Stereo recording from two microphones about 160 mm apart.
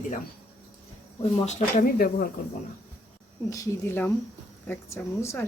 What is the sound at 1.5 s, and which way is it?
Speech, 45° left (ahead or behind).